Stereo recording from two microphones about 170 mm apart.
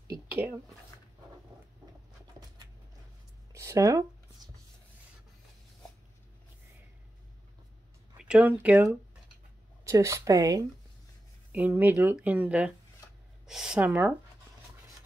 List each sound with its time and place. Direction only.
0.3 s speech: 10° right (ahead or behind)
3.5 s speech: 15° right (ahead or behind)
8.2 s a woman's voice: 5° right (ahead or behind)